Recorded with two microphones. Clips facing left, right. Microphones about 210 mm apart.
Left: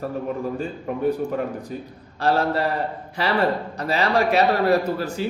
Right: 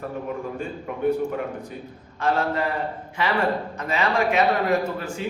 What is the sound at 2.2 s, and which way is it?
A man's voice, 35° left (ahead or behind).